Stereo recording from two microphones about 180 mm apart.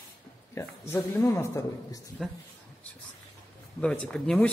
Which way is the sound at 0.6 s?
15° left (ahead or behind).